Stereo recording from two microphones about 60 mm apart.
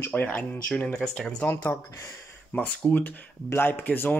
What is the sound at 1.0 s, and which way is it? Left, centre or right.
Speech, centre.